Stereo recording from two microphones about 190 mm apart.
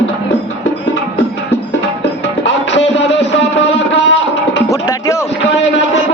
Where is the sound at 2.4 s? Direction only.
70° left (ahead or behind).